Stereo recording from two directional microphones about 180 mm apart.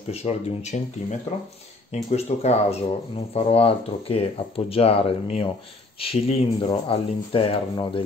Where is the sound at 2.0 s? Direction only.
35° left (ahead or behind).